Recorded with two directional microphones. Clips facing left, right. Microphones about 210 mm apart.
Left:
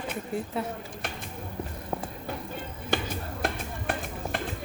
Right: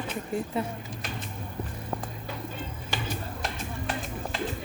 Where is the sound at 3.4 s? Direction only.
55° left (ahead or behind).